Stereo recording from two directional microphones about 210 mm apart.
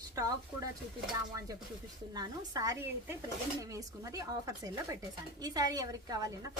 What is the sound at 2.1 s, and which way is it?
Speech, 20° right (ahead or behind).